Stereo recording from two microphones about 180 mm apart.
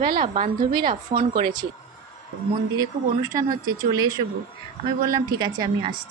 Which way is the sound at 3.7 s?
20° right (ahead or behind).